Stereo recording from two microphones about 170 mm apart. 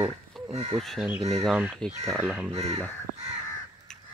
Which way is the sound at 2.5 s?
35° right (ahead or behind).